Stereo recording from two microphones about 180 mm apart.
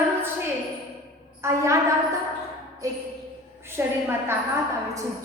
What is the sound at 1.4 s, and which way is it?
Speech, 15° right (ahead or behind).